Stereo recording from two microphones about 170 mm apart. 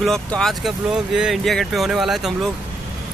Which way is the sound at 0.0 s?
5° left (ahead or behind).